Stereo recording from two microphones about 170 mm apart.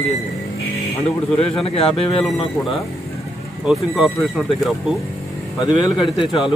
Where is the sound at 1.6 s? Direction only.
35° left (ahead or behind).